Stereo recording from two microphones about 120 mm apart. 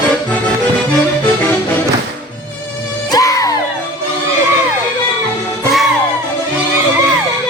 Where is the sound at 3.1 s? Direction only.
30° left (ahead or behind).